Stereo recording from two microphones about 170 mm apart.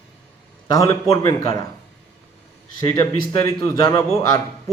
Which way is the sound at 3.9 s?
25° left (ahead or behind).